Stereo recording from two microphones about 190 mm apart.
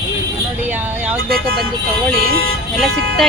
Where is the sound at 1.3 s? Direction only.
50° right (ahead or behind).